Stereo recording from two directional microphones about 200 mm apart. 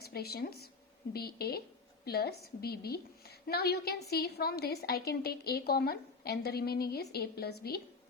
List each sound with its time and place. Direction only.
0.0 s a woman's voice: 50° left (ahead or behind)